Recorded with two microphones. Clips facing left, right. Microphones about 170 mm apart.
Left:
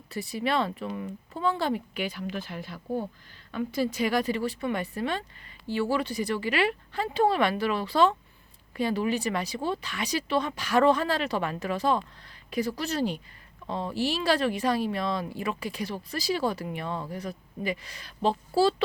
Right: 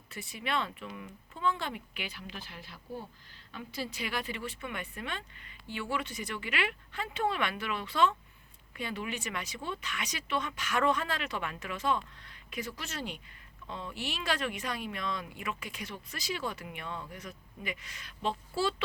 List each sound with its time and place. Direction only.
0.1 s speech: 35° left (ahead or behind)